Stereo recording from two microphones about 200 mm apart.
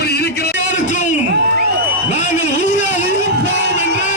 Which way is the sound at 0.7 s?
35° left (ahead or behind).